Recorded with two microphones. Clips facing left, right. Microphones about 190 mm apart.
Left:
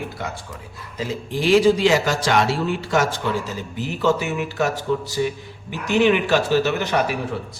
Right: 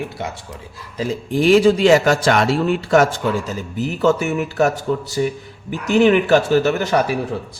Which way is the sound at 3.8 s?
45° right (ahead or behind).